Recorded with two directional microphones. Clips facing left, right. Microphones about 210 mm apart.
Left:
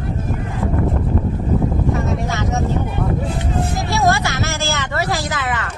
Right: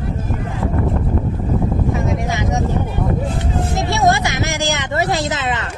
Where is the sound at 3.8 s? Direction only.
20° right (ahead or behind).